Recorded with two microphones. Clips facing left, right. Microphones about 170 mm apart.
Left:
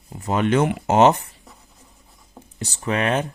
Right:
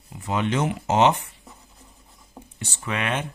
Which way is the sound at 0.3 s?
50° left (ahead or behind).